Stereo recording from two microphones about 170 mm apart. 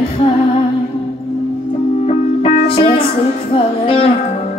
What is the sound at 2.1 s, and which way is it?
Music, 35° left (ahead or behind).